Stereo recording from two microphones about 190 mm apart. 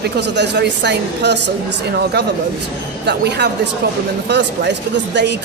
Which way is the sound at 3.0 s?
60° right (ahead or behind).